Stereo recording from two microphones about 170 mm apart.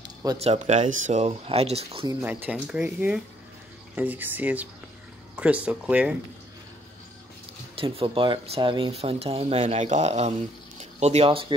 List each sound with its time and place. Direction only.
0.4 s speech: 40° right (ahead or behind)
2.2 s speech: 10° right (ahead or behind)
7.7 s speech: 30° right (ahead or behind)